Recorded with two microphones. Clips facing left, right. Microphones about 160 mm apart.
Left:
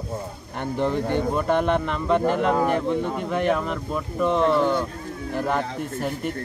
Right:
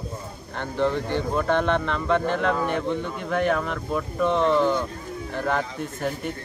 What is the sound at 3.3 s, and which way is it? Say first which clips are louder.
Speech: right 2 dB; centre (ahead or behind).